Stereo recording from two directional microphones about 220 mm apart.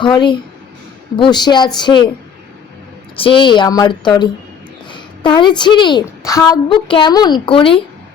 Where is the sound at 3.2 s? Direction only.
25° left (ahead or behind).